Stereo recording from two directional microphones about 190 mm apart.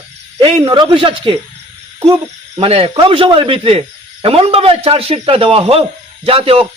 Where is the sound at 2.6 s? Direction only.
30° right (ahead or behind).